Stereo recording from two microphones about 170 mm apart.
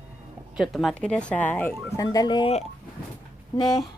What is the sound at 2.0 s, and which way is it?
Speech, 20° left (ahead or behind).